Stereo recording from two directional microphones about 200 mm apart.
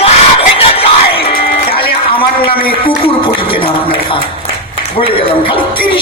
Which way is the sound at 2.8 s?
25° left (ahead or behind).